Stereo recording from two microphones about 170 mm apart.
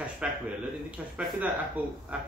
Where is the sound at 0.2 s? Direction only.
5° right (ahead or behind).